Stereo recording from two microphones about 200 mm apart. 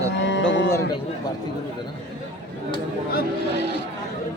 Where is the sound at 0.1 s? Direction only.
60° left (ahead or behind).